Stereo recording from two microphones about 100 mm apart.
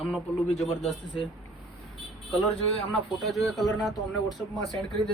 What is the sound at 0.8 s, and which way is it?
Speech, 60° left (ahead or behind).